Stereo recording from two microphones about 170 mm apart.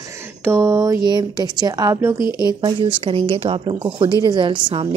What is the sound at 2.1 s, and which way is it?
Speech, 25° left (ahead or behind).